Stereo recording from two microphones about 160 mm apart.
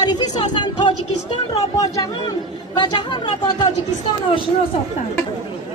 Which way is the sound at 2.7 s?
25° left (ahead or behind).